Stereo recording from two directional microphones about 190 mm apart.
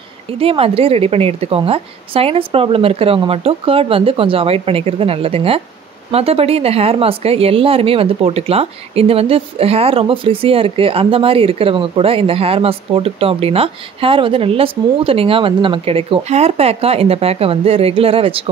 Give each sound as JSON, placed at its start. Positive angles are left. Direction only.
{"t": 0.3, "sound": "speech", "side_deg": -30}